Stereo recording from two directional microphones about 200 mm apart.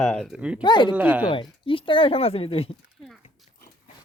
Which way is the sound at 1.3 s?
25° left (ahead or behind).